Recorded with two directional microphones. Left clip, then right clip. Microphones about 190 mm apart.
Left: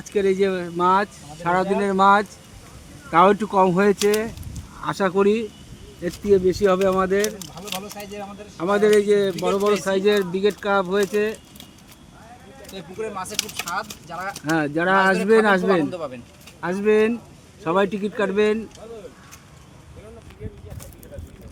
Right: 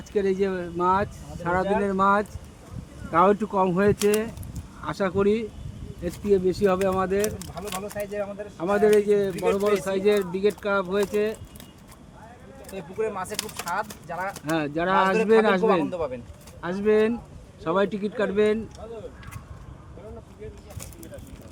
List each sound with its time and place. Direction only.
0.0 s speech: 35° left (ahead or behind)
7.3 s speech: 15° right (ahead or behind)
8.5 s speech: 45° left (ahead or behind)
12.7 s speech: 20° right (ahead or behind)
14.5 s speech: 40° left (ahead or behind)
15.9 s speech: 30° right (ahead or behind)
16.6 s speech: 40° left (ahead or behind)